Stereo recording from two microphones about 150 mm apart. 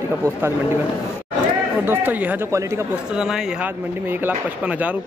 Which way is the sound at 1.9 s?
15° right (ahead or behind).